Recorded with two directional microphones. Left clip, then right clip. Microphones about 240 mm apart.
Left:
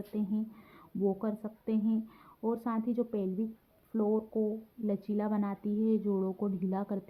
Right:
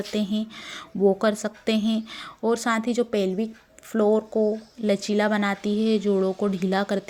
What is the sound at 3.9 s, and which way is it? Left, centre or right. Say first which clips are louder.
Speech: right 11 dB; right.